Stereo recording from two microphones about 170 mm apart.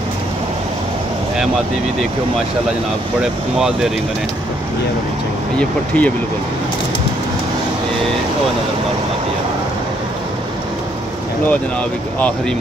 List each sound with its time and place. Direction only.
3.5 s speech: 5° right (ahead or behind)
5.6 s speech: 10° left (ahead or behind)